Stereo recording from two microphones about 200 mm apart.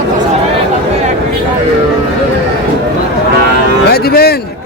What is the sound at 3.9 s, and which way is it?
Music, 50° left (ahead or behind).